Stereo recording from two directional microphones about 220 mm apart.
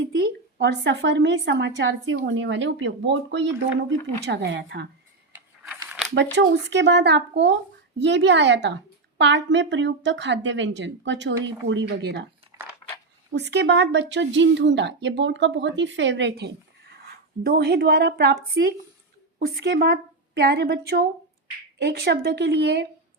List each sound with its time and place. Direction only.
0.6 s a woman's voice: 50° right (ahead or behind)
5.8 s a sound: 10° right (ahead or behind)
6.3 s a woman's voice: 50° right (ahead or behind)
13.3 s a woman's voice: 50° right (ahead or behind)
19.4 s a woman's voice: 45° right (ahead or behind)